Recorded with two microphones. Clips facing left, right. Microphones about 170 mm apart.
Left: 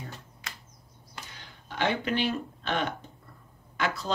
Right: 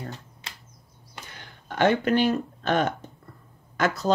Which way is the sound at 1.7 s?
45° right (ahead or behind).